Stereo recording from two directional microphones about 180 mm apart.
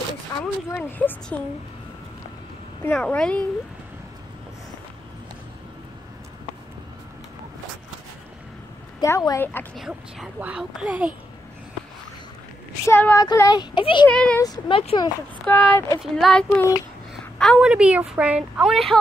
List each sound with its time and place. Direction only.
0.3 s a sound: 25° left (ahead or behind)
0.7 s a woman's voice: 10° left (ahead or behind)
2.8 s a woman's voice: 10° left (ahead or behind)
9.0 s a woman's voice: 20° left (ahead or behind)
9.8 s speech: centre (ahead or behind)
12.8 s a woman's voice: 15° left (ahead or behind)
14.0 s a woman's voice: 5° left (ahead or behind)
14.4 s speech: 20° left (ahead or behind)
14.8 s speech: 30° left (ahead or behind)
15.4 s a woman's voice: 10° left (ahead or behind)